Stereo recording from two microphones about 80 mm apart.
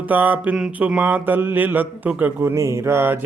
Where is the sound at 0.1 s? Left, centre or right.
Right.